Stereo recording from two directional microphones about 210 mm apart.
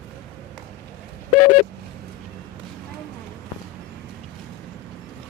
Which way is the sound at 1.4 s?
90° left.